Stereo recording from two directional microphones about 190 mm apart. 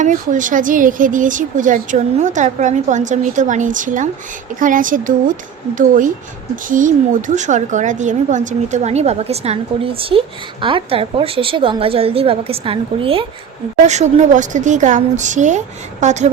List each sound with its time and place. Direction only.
0.0 s a woman's voice: 40° right (ahead or behind)